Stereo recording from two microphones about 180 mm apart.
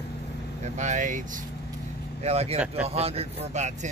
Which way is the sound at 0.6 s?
40° right (ahead or behind).